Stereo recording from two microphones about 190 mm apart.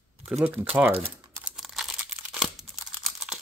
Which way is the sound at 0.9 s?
30° right (ahead or behind).